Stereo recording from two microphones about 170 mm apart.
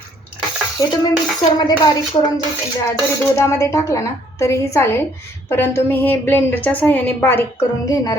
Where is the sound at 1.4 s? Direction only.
25° left (ahead or behind).